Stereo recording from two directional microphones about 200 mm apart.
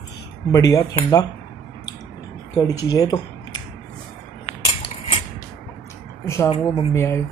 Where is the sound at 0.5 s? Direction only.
20° left (ahead or behind).